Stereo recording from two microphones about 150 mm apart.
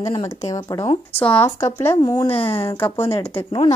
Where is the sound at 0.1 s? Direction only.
25° left (ahead or behind).